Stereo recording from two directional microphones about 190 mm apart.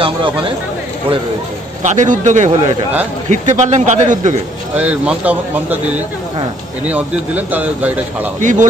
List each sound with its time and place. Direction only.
0.0 s speech: 25° right (ahead or behind)
1.8 s a man's voice: 40° right (ahead or behind)
4.7 s speech: 5° right (ahead or behind)
6.9 s speech: 10° right (ahead or behind)
8.4 s a man's voice: 40° right (ahead or behind)